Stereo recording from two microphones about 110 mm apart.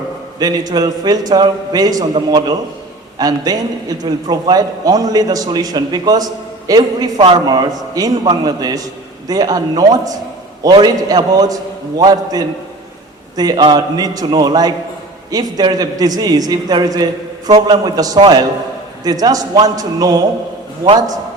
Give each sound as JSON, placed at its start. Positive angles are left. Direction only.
{"t": 0.3, "sound": "a man's voice", "side_deg": -35}